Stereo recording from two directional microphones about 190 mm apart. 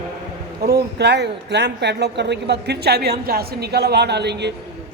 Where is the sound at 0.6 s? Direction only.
60° right (ahead or behind).